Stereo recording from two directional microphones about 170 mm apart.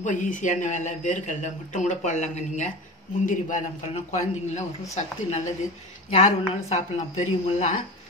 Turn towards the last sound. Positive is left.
turn(degrees=45)  # may be behind; listen again after turning